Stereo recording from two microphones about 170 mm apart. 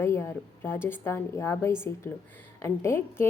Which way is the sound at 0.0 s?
15° left (ahead or behind).